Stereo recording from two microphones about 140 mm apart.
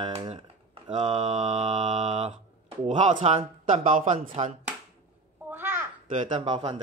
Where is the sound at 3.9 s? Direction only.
70° right (ahead or behind).